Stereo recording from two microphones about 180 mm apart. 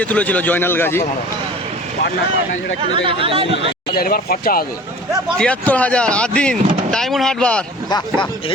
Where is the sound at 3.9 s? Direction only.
55° left (ahead or behind).